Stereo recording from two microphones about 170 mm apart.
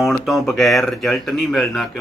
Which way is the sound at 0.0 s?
Centre (ahead or behind).